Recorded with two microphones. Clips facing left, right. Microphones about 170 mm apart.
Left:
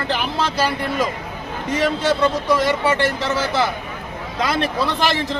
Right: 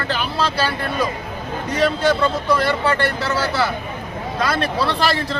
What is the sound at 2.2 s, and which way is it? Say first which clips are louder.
Speech: left 1 dB; 15° left (ahead or behind).